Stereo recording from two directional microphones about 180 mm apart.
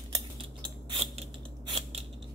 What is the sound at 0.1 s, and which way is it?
Scissors, 30° right (ahead or behind).